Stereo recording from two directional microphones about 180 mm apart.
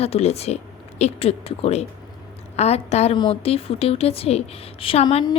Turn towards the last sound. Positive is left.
turn(degrees=30)  # may be behind; listen again after turning